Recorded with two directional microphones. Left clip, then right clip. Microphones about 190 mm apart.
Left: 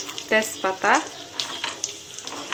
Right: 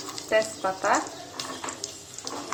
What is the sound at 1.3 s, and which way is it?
Stir, 25° right (ahead or behind).